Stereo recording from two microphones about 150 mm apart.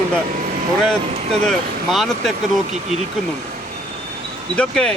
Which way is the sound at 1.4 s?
Centre (ahead or behind).